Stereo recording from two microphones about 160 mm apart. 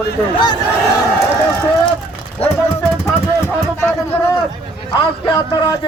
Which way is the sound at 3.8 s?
15° left (ahead or behind).